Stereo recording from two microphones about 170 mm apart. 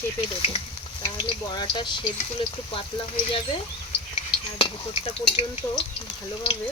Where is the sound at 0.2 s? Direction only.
30° left (ahead or behind).